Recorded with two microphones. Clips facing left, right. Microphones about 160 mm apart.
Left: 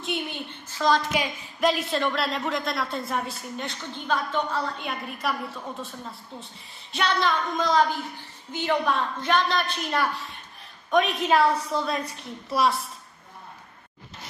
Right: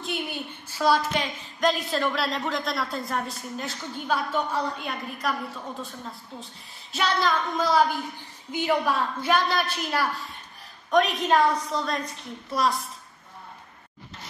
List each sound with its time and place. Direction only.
0.0 s a sound: 5° right (ahead or behind)
1.1 s a woman's voice: 10° left (ahead or behind); by 4.7 s 15° right (ahead or behind)
4.7 s a woman's voice: centre (ahead or behind)